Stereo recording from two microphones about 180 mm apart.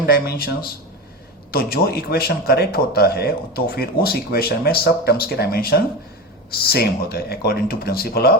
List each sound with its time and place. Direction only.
0.1 s a man's voice: 60° left (ahead or behind)